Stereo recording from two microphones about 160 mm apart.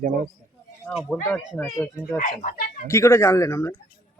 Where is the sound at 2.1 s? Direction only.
50° left (ahead or behind).